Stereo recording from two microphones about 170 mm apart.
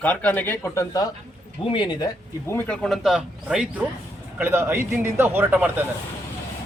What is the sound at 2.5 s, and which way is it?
A man's voice, 10° left (ahead or behind).